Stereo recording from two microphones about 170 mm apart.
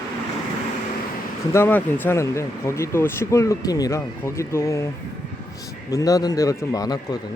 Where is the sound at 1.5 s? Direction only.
10° left (ahead or behind).